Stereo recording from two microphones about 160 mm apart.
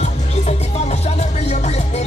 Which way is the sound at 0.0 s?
45° left (ahead or behind).